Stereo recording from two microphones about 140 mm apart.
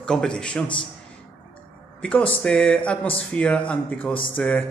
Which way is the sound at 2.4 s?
5° left (ahead or behind).